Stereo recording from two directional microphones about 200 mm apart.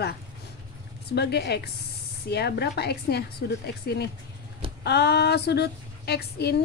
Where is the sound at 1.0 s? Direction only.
55° left (ahead or behind).